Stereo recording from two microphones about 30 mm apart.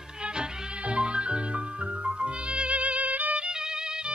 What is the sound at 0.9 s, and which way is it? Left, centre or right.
Music, right.